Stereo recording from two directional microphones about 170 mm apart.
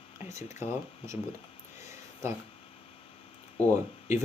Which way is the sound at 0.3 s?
15° right (ahead or behind).